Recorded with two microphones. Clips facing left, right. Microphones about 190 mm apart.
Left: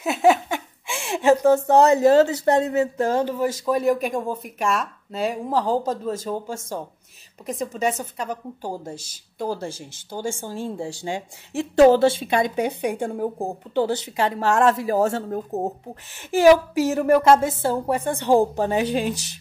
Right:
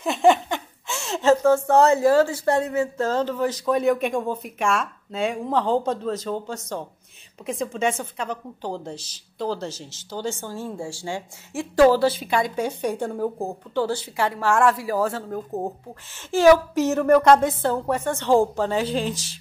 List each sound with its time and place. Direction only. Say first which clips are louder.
0.0 s a woman's voice: even; 5° left (ahead or behind)
8.9 s speech: even; 50° left (ahead or behind)
10.1 s a woman's voice: left 1 dB; 10° left (ahead or behind)